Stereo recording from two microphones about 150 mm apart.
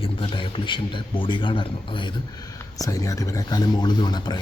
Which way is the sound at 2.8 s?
20° left (ahead or behind).